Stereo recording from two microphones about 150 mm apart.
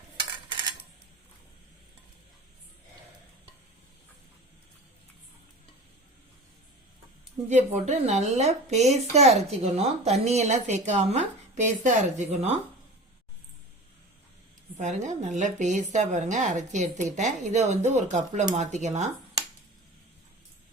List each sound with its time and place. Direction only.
7.4 s a woman's voice: 50° right (ahead or behind)
14.8 s a woman's voice: 50° right (ahead or behind)